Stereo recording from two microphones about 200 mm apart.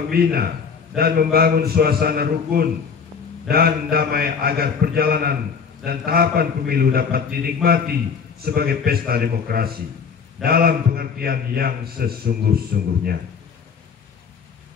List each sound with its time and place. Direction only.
0.1 s a man's voice: 50° right (ahead or behind)